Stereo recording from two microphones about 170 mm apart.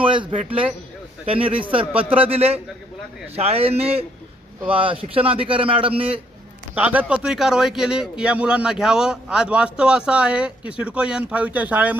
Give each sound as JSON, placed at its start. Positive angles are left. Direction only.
{"t": 0.0, "sound": "a sound", "side_deg": -30}
{"t": 1.3, "sound": "a man's voice", "side_deg": -30}
{"t": 6.7, "sound": "a man's voice", "side_deg": -5}